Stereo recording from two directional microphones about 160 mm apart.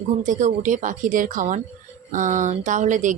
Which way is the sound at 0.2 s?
50° right (ahead or behind).